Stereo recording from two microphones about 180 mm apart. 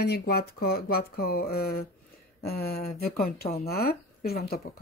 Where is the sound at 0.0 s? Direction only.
60° left (ahead or behind).